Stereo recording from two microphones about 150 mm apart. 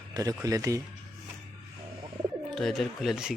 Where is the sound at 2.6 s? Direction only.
Centre (ahead or behind).